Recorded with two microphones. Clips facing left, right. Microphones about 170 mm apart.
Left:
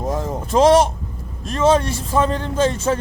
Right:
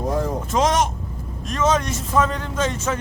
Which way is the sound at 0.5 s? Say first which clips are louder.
Left 8 dB; 30° left (ahead or behind).